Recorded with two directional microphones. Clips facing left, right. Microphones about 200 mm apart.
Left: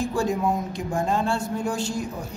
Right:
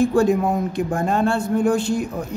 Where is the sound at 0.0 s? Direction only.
60° right (ahead or behind).